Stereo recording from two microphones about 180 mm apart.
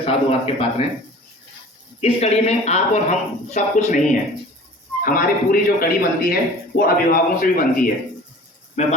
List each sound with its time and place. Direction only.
0.0 s speech: 35° left (ahead or behind)
2.0 s a man's voice: 35° left (ahead or behind)
8.8 s speech: 40° left (ahead or behind)